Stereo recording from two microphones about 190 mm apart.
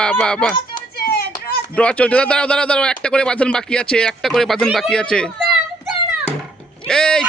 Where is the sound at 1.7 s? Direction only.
5° left (ahead or behind).